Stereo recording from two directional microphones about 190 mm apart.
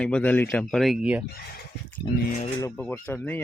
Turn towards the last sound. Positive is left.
turn(degrees=10)  # may be behind; listen again after turning